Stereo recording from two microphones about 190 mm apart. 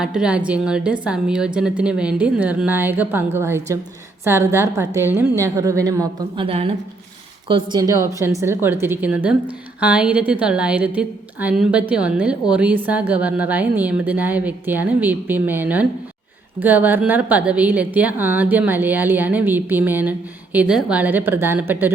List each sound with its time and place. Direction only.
0.0 s a woman's voice: 5° right (ahead or behind)